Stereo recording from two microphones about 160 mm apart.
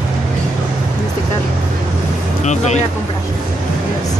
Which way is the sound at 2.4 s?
45° left (ahead or behind).